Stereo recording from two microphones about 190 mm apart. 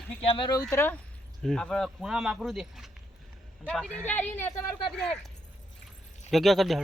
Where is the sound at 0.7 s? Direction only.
10° left (ahead or behind).